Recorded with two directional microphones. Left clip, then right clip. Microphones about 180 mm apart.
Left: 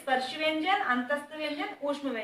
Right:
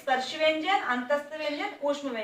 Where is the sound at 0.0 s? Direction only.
20° left (ahead or behind).